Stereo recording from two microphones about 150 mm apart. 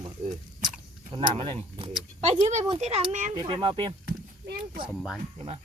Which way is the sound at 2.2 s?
45° right (ahead or behind).